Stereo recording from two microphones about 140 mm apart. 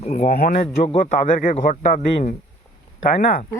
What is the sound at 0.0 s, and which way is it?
Speech, 50° left (ahead or behind).